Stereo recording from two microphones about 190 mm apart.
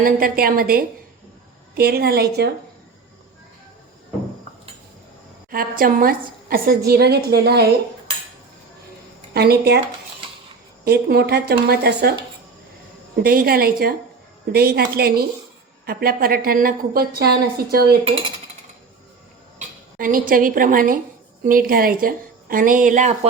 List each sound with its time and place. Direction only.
0.0 s a woman's voice: 50° right (ahead or behind)
5.5 s a woman's voice: 50° right (ahead or behind)
9.3 s speech: 55° right (ahead or behind)
10.8 s speech: 55° right (ahead or behind)
13.2 s a woman's voice: 50° right (ahead or behind)
18.0 s speech: 30° right (ahead or behind)
19.5 s a woman's voice: 45° right (ahead or behind)